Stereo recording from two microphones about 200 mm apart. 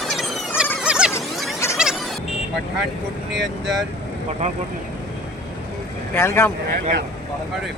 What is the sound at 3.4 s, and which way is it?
Speech, centre (ahead or behind).